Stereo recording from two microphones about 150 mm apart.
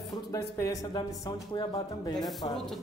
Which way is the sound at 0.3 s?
20° left (ahead or behind).